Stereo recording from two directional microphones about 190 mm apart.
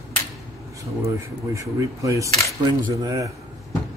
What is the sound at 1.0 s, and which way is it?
Speech, 15° right (ahead or behind).